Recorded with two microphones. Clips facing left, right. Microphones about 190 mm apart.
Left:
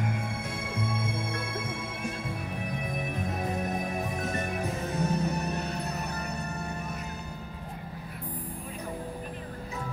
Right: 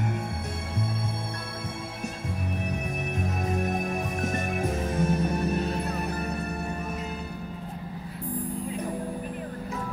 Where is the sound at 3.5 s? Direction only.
50° right (ahead or behind).